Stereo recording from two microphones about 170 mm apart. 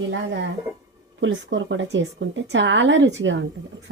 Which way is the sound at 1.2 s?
90° right.